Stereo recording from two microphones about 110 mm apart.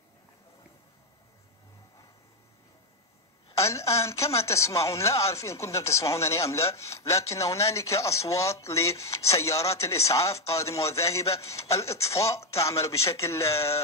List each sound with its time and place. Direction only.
3.5 s speech: 30° left (ahead or behind)